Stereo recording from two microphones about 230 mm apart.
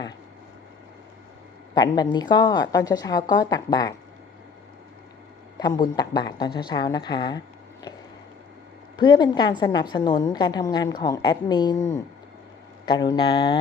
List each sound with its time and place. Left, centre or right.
1.7 s a woman's voice: centre
5.5 s a woman's voice: centre
9.0 s a woman's voice: centre
12.8 s a woman's voice: centre